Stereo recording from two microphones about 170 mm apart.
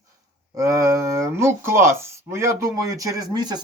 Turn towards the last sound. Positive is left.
turn(degrees=-25)  # may be behind; listen again after turning